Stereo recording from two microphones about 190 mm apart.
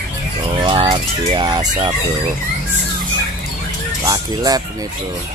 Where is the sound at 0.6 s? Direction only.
25° right (ahead or behind).